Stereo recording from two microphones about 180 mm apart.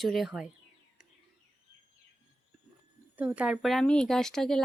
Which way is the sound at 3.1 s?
5° right (ahead or behind).